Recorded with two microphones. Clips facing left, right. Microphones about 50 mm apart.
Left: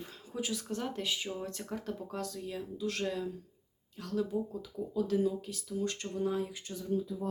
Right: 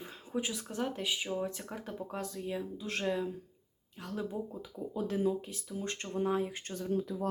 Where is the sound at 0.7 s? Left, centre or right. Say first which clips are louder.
Right 1 dB; centre.